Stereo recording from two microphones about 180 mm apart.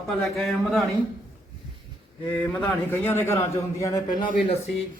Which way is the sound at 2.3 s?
10° left (ahead or behind).